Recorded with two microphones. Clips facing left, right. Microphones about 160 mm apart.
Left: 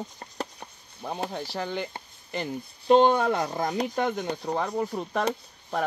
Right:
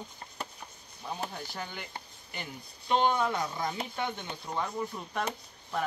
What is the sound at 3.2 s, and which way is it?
Speech, 60° left (ahead or behind).